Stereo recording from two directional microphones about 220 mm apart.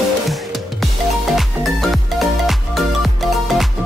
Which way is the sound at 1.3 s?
Centre (ahead or behind).